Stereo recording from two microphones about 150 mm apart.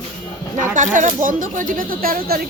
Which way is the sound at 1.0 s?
60° right (ahead or behind).